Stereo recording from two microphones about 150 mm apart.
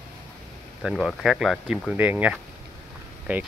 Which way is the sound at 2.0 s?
10° right (ahead or behind).